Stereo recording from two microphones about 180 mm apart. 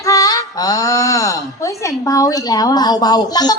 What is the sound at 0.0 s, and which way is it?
Speech, 20° left (ahead or behind).